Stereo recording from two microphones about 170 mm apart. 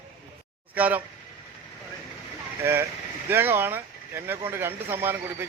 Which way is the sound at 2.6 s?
15° right (ahead or behind).